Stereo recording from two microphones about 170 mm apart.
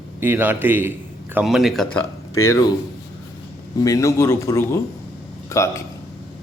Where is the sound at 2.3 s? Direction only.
15° left (ahead or behind).